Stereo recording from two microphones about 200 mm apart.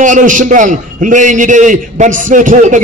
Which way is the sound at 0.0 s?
40° right (ahead or behind).